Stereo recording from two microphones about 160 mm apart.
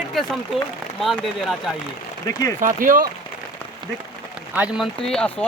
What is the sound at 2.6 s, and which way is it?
Speech, 60° right (ahead or behind).